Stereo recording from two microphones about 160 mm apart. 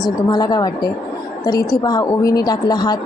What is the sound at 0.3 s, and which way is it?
A woman's voice, 25° left (ahead or behind).